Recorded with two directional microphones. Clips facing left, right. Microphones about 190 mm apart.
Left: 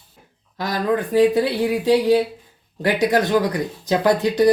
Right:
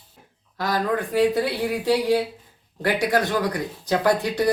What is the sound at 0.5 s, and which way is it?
Speech, 20° left (ahead or behind).